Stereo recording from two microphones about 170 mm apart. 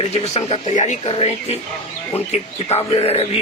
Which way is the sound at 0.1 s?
35° left (ahead or behind).